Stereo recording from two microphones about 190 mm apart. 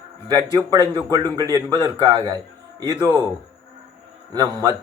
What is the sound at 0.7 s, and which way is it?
A man's voice, 20° right (ahead or behind).